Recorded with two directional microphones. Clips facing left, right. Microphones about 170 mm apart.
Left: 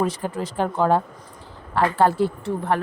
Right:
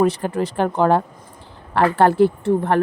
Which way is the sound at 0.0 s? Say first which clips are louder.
Right 6 dB; 65° right (ahead or behind).